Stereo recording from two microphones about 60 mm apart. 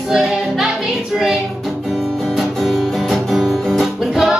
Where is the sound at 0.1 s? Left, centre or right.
Centre.